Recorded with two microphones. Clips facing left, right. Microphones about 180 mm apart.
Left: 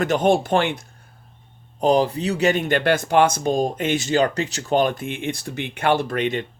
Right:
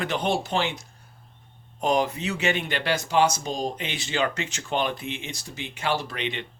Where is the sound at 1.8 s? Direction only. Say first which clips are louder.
Left 6 dB; 35° left (ahead or behind).